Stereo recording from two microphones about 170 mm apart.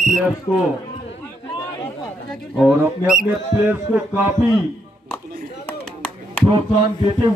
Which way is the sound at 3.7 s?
10° right (ahead or behind).